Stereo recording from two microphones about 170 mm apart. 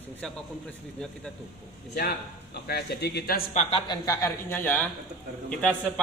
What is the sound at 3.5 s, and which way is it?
Speech, 40° left (ahead or behind).